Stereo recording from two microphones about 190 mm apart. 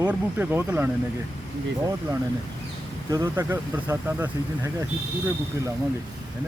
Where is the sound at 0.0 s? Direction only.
10° right (ahead or behind).